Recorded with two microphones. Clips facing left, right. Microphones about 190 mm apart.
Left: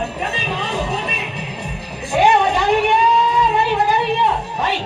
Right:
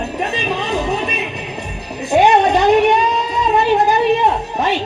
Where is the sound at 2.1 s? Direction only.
40° right (ahead or behind).